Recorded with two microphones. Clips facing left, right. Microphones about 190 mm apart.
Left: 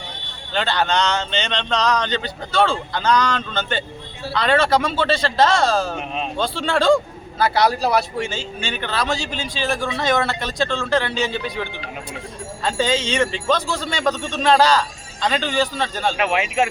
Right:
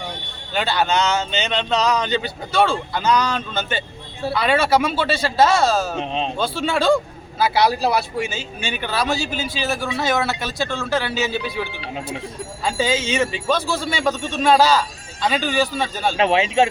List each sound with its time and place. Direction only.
0.5 s a man's voice: 10° right (ahead or behind)
6.0 s speech: 30° right (ahead or behind)
6.4 s a man's voice: 5° right (ahead or behind)
16.1 s speech: 30° right (ahead or behind)